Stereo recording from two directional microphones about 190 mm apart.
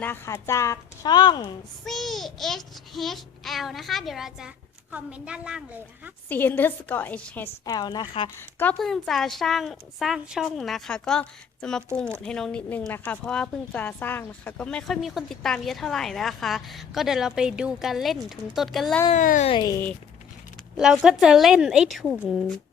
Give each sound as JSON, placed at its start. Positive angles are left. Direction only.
{"t": 0.0, "sound": "speech", "side_deg": 10}
{"t": 1.8, "sound": "speech", "side_deg": 0}
{"t": 6.2, "sound": "speech", "side_deg": 10}
{"t": 7.6, "sound": "a woman's voice", "side_deg": 20}
{"t": 8.4, "sound": "speech", "side_deg": 10}
{"t": 19.1, "sound": "speech", "side_deg": 40}
{"t": 19.5, "sound": "a woman's voice", "side_deg": 20}
{"t": 20.7, "sound": "speech", "side_deg": -5}